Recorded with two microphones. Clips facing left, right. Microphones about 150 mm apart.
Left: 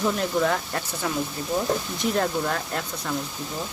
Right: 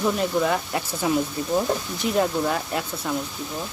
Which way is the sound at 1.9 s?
5° right (ahead or behind).